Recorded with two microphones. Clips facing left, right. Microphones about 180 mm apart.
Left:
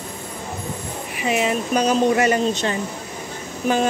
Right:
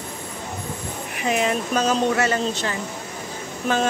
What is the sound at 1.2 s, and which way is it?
Speech, 5° left (ahead or behind).